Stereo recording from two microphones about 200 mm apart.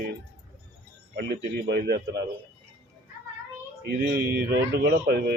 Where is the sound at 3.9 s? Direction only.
55° right (ahead or behind).